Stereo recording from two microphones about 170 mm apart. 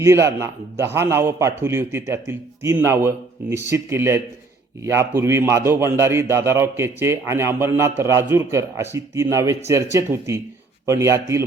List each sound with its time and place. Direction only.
0.0 s a man's voice: 15° right (ahead or behind)